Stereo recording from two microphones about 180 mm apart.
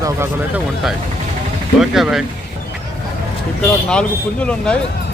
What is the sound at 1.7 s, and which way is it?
Speech, centre (ahead or behind).